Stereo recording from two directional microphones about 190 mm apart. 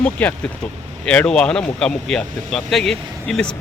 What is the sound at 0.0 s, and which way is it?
Speech, 10° left (ahead or behind).